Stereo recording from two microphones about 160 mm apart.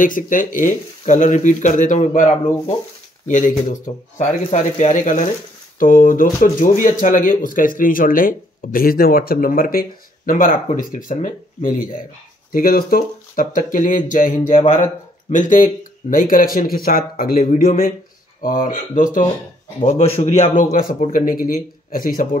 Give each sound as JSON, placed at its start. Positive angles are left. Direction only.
{"t": 0.0, "sound": "speech", "side_deg": 55}
{"t": 19.8, "sound": "speech", "side_deg": 45}
{"t": 20.7, "sound": "speech", "side_deg": 60}